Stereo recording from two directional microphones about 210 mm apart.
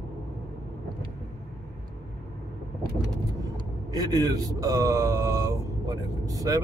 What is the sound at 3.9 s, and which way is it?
Speech, 20° right (ahead or behind).